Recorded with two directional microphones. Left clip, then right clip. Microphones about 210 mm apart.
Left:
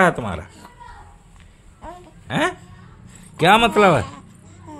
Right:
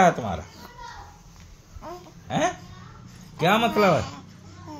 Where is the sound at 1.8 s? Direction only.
10° left (ahead or behind).